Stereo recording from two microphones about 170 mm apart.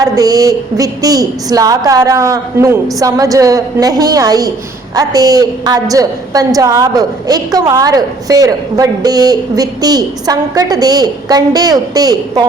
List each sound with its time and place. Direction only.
0.0 s a woman's voice: 20° right (ahead or behind)